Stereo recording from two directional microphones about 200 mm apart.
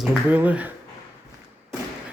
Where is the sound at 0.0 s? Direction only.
10° right (ahead or behind).